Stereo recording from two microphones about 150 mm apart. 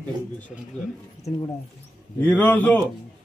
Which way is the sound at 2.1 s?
10° left (ahead or behind).